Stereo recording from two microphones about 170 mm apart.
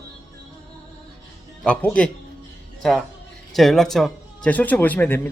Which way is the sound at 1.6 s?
10° left (ahead or behind).